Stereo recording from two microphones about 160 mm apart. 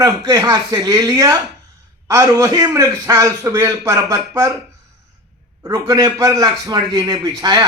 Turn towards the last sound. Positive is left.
turn(degrees=-25)  # may be behind; listen again after turning